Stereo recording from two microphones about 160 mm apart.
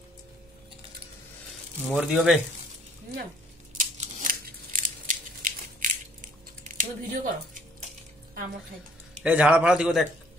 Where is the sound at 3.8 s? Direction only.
50° right (ahead or behind).